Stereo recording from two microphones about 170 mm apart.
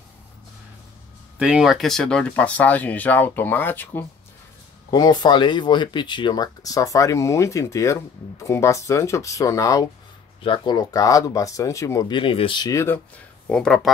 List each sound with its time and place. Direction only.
1.4 s speech: 5° right (ahead or behind); by 4.0 s 10° left (ahead or behind)
4.9 s speech: 25° left (ahead or behind)
13.5 s speech: 5° left (ahead or behind)